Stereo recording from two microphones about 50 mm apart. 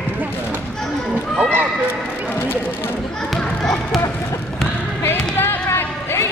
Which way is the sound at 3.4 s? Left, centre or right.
Centre.